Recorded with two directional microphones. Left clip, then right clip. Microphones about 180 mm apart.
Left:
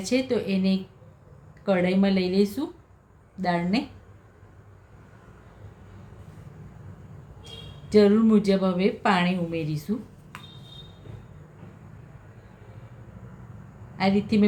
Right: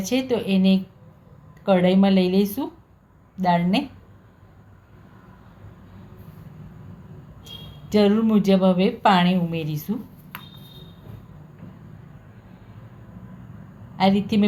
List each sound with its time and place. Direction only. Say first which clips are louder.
0.0 s speech: right 2 dB; 10° right (ahead or behind)
7.4 s a woman's voice: right 3 dB; 15° right (ahead or behind)
10.3 s a sound: right 4 dB; 45° right (ahead or behind)
14.0 s speech: right 4 dB; 15° right (ahead or behind)